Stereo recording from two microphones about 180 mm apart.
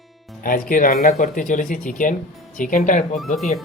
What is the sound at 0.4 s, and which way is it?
Speech, 50° left (ahead or behind).